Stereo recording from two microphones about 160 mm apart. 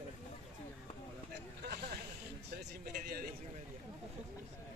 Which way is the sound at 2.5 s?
70° right (ahead or behind).